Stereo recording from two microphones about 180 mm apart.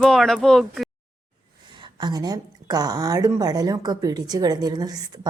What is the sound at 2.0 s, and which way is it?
A woman's voice, 20° right (ahead or behind).